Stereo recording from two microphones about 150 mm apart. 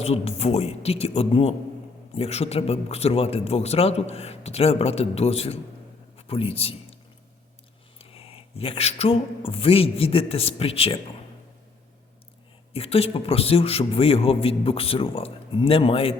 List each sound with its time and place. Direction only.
0.0 s speech: 45° left (ahead or behind)
7.9 s speech: 40° left (ahead or behind)
12.7 s a man's voice: 40° left (ahead or behind)